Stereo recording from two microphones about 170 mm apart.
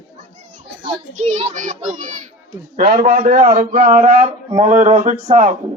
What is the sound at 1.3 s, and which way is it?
Speech, 45° right (ahead or behind).